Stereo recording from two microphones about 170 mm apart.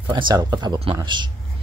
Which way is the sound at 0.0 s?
25° right (ahead or behind).